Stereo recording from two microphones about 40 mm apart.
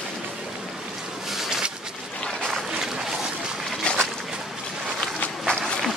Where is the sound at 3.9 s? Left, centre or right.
Left.